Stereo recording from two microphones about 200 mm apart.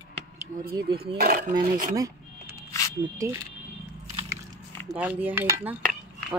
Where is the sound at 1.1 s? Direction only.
45° right (ahead or behind).